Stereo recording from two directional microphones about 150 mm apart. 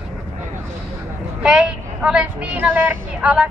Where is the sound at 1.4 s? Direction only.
5° right (ahead or behind).